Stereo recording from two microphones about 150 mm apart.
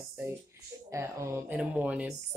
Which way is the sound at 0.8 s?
20° right (ahead or behind).